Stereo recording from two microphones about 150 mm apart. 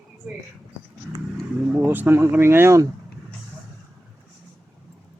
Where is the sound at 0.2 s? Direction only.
5° right (ahead or behind).